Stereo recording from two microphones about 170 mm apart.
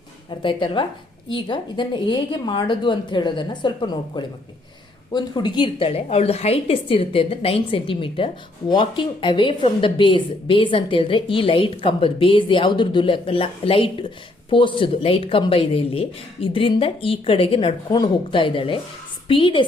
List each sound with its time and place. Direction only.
0.3 s a woman's voice: 30° left (ahead or behind)